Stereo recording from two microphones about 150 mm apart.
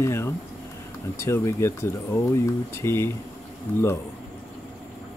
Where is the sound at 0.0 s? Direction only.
15° left (ahead or behind).